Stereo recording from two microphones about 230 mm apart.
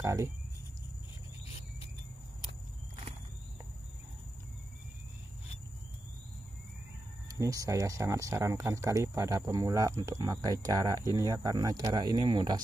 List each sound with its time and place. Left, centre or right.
0.0 s speech: centre
7.2 s speech: centre